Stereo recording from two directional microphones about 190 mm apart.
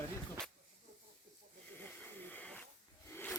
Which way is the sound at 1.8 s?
10° left (ahead or behind).